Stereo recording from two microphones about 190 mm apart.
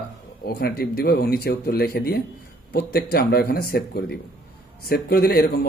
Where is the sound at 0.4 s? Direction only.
55° left (ahead or behind).